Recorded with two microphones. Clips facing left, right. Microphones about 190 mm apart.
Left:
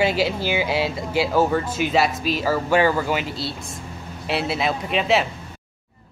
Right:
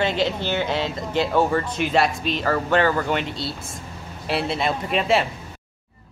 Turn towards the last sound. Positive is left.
turn(degrees=0)  # may be behind; listen again after turning